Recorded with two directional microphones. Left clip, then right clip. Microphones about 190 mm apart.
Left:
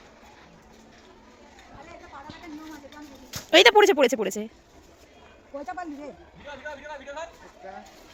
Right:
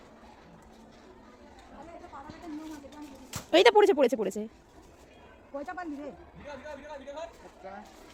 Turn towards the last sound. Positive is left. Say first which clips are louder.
# left 4 dB
turn(degrees=40)  # may be behind; listen again after turning